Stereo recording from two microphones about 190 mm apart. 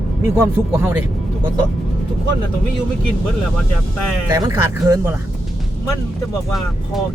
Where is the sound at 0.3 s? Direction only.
15° right (ahead or behind).